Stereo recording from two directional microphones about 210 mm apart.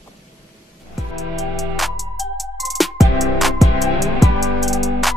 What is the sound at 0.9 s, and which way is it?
Music, centre (ahead or behind).